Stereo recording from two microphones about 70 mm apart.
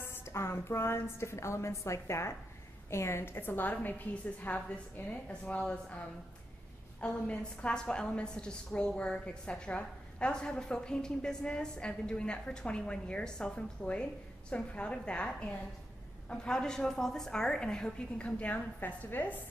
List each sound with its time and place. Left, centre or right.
0.0 s a woman's voice: left
5.3 s a woman's voice: centre